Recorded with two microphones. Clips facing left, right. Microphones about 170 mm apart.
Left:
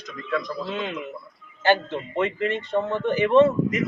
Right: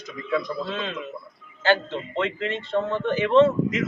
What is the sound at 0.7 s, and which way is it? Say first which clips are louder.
A man's voice: left 1 dB; 15° left (ahead or behind).